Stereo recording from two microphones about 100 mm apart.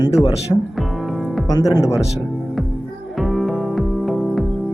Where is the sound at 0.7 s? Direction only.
Centre (ahead or behind).